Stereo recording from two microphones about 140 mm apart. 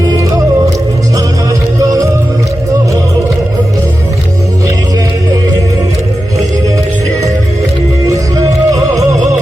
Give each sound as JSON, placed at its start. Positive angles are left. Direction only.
{"t": 1.8, "sound": "music", "side_deg": -25}
{"t": 8.7, "sound": "music", "side_deg": -25}